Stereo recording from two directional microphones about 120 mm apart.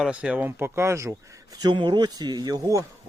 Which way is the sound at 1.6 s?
40° right (ahead or behind).